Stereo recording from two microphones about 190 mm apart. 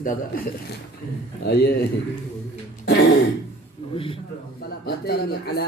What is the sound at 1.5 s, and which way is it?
Speech, 55° left (ahead or behind).